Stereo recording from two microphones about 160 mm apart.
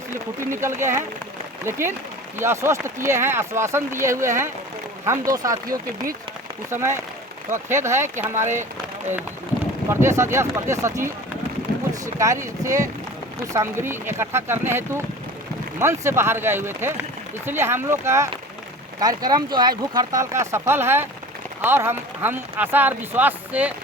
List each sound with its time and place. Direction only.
0.6 s speech: 15° right (ahead or behind)
2.4 s speech: 15° right (ahead or behind)
6.7 s speech: 15° right (ahead or behind)
9.9 s speech: 15° right (ahead or behind)